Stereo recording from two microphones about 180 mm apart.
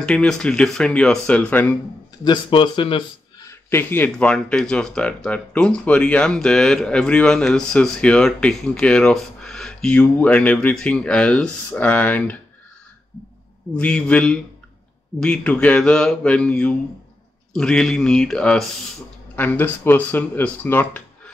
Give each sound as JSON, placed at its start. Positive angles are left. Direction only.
{"t": 0.0, "sound": "speech", "side_deg": 5}
{"t": 2.2, "sound": "speech", "side_deg": 25}
{"t": 3.4, "sound": "speech", "side_deg": 10}
{"t": 13.7, "sound": "speech", "side_deg": 5}